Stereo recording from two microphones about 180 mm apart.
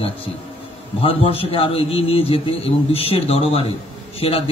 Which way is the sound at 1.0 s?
30° left (ahead or behind).